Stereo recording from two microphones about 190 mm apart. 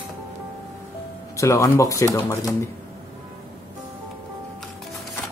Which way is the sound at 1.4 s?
15° left (ahead or behind).